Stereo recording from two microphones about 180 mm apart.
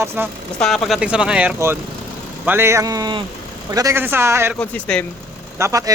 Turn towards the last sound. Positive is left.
turn(degrees=-15)  # may be behind; listen again after turning